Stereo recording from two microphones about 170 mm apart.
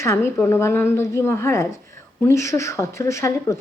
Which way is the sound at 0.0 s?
15° left (ahead or behind).